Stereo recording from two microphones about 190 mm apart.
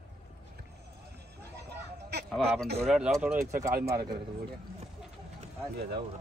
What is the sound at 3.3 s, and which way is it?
Speech, 15° right (ahead or behind).